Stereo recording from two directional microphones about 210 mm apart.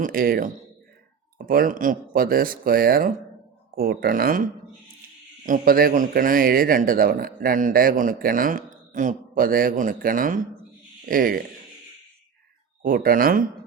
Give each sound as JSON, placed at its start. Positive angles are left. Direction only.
{"t": 0.0, "sound": "speech", "side_deg": -45}
{"t": 5.5, "sound": "speech", "side_deg": -45}
{"t": 12.8, "sound": "speech", "side_deg": -45}